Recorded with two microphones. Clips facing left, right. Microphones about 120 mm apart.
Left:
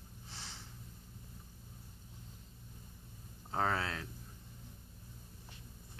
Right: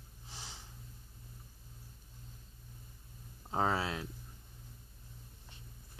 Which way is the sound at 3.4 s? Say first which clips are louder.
Right 2 dB; 15° right (ahead or behind).